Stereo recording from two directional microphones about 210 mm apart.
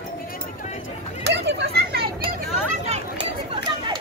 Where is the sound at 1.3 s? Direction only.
55° right (ahead or behind).